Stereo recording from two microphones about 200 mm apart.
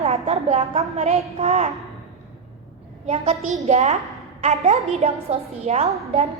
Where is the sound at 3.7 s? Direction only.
35° right (ahead or behind).